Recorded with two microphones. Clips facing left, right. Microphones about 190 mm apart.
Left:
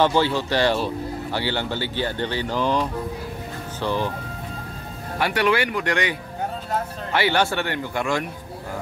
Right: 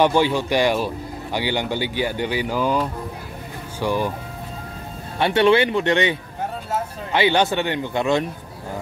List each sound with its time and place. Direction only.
0.0 s speech: 15° right (ahead or behind)
5.2 s speech: 25° right (ahead or behind)